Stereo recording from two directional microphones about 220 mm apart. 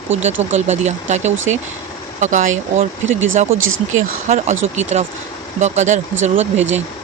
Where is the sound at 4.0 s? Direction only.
35° right (ahead or behind).